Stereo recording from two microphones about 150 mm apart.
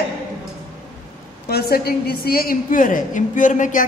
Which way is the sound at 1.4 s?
90° left.